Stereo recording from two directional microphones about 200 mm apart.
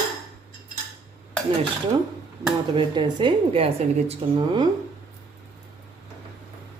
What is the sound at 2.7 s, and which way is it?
Speech, 25° right (ahead or behind).